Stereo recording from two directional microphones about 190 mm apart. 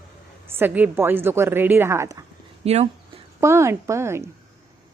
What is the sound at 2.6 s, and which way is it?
Speech, 35° right (ahead or behind).